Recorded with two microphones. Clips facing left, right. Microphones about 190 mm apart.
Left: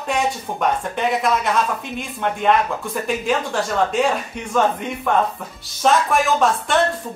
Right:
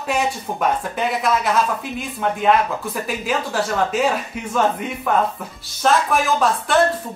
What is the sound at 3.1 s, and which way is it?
Speech, 5° right (ahead or behind).